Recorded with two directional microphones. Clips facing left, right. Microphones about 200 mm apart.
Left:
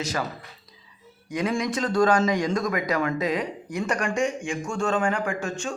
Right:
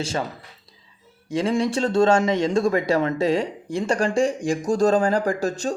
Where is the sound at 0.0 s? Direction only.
30° right (ahead or behind).